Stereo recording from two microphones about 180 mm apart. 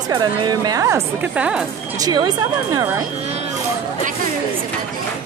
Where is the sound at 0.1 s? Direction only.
20° right (ahead or behind); by 1.7 s 5° right (ahead or behind).